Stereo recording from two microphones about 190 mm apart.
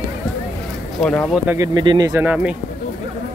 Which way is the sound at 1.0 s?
Centre (ahead or behind).